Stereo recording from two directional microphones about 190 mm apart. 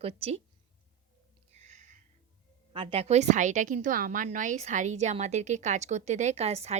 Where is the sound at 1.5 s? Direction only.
35° right (ahead or behind).